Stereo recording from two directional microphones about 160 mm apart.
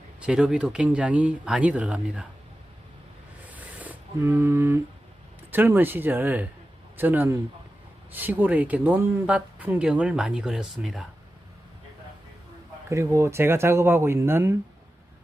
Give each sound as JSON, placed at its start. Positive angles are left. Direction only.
{"t": 0.2, "sound": "speech", "side_deg": -5}
{"t": 3.5, "sound": "a sound", "side_deg": -10}
{"t": 5.5, "sound": "speech", "side_deg": -10}
{"t": 12.9, "sound": "speech", "side_deg": -20}